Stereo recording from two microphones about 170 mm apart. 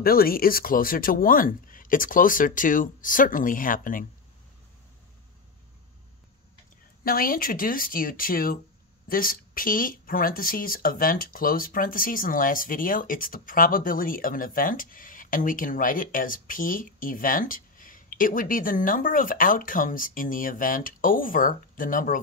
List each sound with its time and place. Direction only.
0.0 s speech: 60° left (ahead or behind)
7.1 s speech: 60° left (ahead or behind)